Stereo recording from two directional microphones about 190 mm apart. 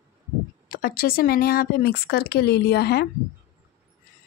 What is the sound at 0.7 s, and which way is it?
Speech, 50° left (ahead or behind).